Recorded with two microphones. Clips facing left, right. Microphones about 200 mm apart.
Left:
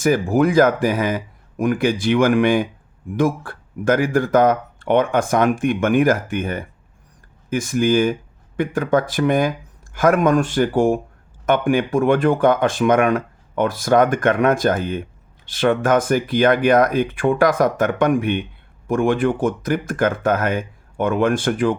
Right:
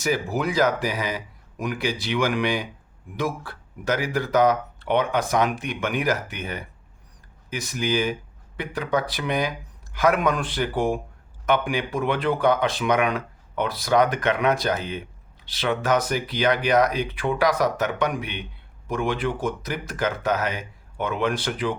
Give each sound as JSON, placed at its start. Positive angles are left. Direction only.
{"t": 0.0, "sound": "speech", "side_deg": 50}